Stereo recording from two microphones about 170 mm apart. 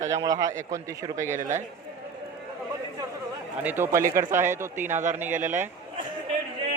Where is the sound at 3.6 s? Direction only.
15° right (ahead or behind).